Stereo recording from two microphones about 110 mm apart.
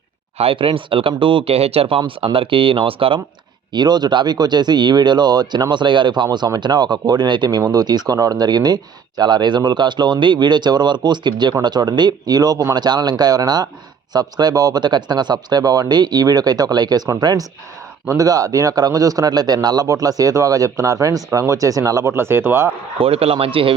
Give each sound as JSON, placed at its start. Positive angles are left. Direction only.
{"t": 0.3, "sound": "speech", "side_deg": -60}
{"t": 3.7, "sound": "speech", "side_deg": -40}
{"t": 23.0, "sound": "speech", "side_deg": -60}